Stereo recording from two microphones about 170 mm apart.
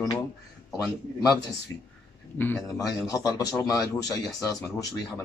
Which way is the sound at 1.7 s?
20° left (ahead or behind).